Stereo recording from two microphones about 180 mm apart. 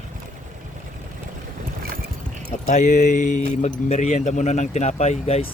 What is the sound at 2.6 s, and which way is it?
Speech, 40° left (ahead or behind).